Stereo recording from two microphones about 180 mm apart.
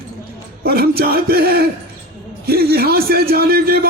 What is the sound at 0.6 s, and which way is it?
A man's voice, 60° right (ahead or behind).